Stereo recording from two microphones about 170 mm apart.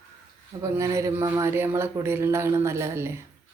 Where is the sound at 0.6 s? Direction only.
20° right (ahead or behind).